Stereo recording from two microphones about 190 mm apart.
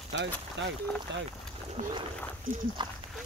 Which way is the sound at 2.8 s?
25° right (ahead or behind).